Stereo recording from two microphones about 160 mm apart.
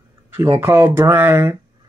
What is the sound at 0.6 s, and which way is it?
Speech, 15° right (ahead or behind).